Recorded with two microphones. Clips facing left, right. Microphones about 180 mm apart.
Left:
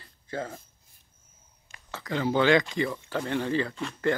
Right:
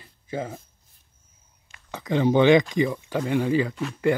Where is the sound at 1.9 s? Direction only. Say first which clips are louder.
Right 6 dB; 20° right (ahead or behind).